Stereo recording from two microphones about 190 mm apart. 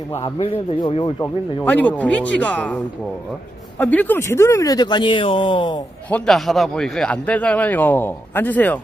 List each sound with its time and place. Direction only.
0.2 s speech: 30° left (ahead or behind)
1.2 s a man's voice: 10° left (ahead or behind); by 5.8 s 25° left (ahead or behind)
6.1 s a man's voice: 5° left (ahead or behind)